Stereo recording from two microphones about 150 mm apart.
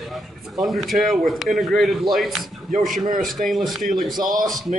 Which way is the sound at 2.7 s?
60° right (ahead or behind).